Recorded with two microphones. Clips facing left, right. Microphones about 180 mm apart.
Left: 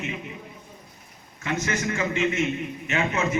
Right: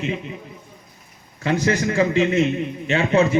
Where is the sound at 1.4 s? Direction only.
35° right (ahead or behind).